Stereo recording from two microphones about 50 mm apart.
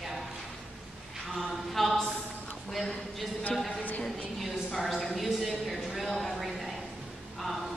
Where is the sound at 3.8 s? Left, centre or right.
Left.